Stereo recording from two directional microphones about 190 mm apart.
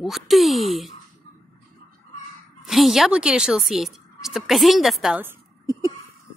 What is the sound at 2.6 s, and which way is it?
A woman's voice, centre (ahead or behind).